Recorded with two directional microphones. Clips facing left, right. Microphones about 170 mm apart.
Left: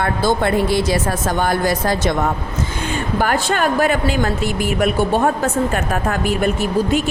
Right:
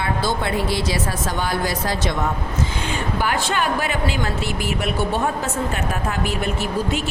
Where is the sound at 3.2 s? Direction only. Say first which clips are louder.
Left 5 dB; 45° left (ahead or behind).